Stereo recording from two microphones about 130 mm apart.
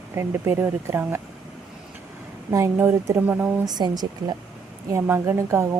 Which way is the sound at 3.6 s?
30° right (ahead or behind).